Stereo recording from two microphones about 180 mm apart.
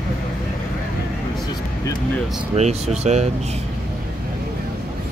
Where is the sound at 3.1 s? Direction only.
40° right (ahead or behind).